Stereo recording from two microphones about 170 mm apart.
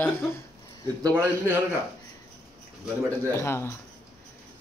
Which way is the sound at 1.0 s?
15° right (ahead or behind).